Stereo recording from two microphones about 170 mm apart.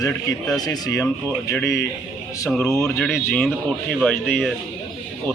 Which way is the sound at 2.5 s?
10° left (ahead or behind).